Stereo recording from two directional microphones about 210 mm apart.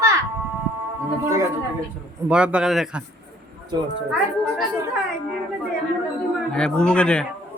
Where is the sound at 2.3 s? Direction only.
5° right (ahead or behind).